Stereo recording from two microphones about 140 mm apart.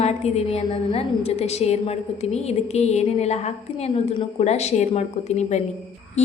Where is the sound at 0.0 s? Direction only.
50° left (ahead or behind).